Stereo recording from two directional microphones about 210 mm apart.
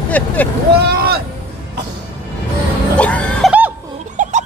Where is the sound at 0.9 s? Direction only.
45° right (ahead or behind).